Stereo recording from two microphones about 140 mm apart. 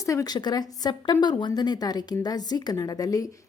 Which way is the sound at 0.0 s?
25° left (ahead or behind).